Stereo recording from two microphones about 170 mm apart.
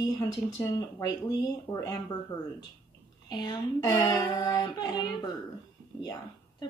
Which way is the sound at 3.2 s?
25° left (ahead or behind).